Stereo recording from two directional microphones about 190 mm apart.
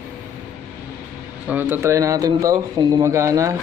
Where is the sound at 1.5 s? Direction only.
10° right (ahead or behind).